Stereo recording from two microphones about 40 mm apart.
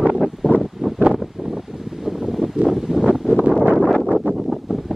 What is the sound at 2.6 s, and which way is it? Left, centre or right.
Wind, centre.